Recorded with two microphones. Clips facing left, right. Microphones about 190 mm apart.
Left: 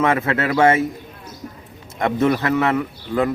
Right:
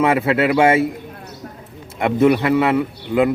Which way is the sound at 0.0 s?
10° right (ahead or behind).